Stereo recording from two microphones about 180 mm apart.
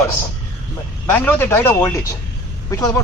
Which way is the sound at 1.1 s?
10° left (ahead or behind).